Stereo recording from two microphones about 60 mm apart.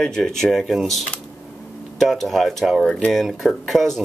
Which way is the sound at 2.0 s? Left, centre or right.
Centre.